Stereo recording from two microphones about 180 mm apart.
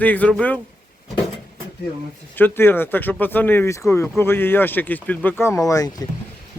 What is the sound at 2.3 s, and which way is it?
Speech, 10° left (ahead or behind).